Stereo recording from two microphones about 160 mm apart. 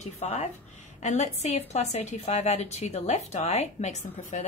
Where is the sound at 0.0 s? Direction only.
40° left (ahead or behind).